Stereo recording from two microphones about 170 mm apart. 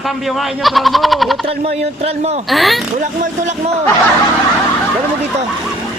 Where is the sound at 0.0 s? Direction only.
Centre (ahead or behind).